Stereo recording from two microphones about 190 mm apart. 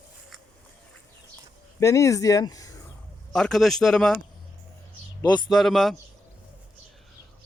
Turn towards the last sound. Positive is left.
turn(degrees=0)  # may be behind; listen again after turning